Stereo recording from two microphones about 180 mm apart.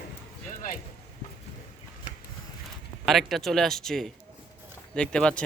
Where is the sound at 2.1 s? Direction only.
45° left (ahead or behind).